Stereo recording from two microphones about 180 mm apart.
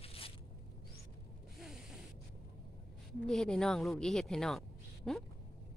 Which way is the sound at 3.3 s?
5° left (ahead or behind).